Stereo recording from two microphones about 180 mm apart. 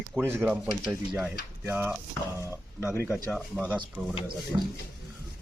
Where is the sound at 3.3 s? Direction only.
Centre (ahead or behind).